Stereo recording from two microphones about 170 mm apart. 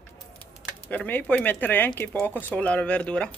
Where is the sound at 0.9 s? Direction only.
10° left (ahead or behind).